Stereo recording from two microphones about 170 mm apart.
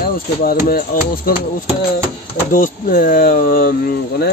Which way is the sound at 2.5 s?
55° left (ahead or behind).